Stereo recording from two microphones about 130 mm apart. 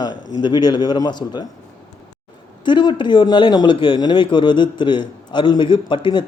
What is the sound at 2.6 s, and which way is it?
Speech, 35° left (ahead or behind).